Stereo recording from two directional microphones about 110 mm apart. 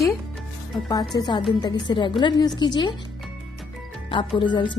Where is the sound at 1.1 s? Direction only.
45° left (ahead or behind).